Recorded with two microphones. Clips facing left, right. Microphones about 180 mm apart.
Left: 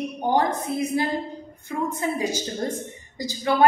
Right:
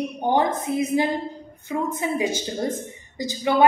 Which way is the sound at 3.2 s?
20° right (ahead or behind).